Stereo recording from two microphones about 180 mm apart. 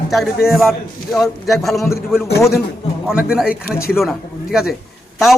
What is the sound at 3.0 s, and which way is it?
A man's voice, 5° right (ahead or behind).